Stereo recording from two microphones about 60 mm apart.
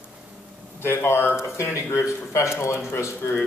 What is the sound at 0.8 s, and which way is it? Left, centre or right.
A man's voice, left.